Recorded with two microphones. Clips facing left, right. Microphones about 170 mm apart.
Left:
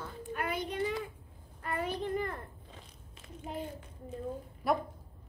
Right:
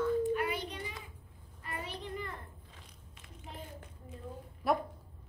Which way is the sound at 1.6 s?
50° left (ahead or behind).